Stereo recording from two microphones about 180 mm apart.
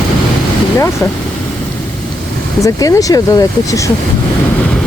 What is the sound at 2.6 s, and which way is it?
Speech, 20° left (ahead or behind).